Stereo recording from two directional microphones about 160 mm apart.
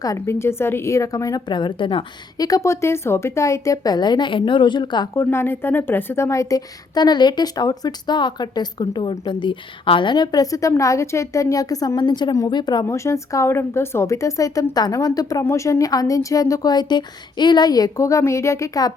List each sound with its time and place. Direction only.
0.0 s a woman's voice: 20° left (ahead or behind)
2.5 s a woman's voice: 20° left (ahead or behind)
5.1 s a woman's voice: 15° left (ahead or behind)